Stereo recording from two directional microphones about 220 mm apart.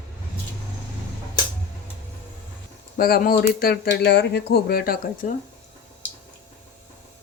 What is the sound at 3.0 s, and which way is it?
Speech, 40° left (ahead or behind).